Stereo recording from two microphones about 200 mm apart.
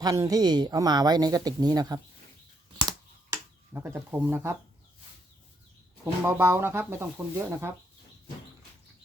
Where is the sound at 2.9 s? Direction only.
15° right (ahead or behind).